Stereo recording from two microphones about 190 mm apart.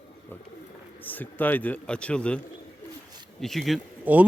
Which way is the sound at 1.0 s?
10° left (ahead or behind).